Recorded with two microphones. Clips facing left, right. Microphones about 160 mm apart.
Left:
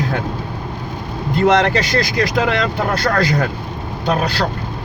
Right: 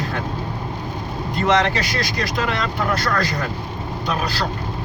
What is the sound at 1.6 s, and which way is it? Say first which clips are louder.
Speech: left 5 dB; 65° left (ahead or behind).